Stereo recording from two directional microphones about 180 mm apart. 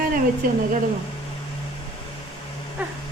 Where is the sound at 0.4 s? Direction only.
50° right (ahead or behind).